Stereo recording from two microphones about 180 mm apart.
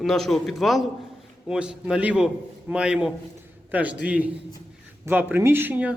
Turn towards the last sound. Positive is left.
turn(degrees=-10)  # may be behind; listen again after turning